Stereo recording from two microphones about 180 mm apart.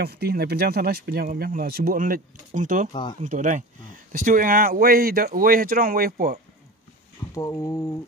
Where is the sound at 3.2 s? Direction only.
45° right (ahead or behind).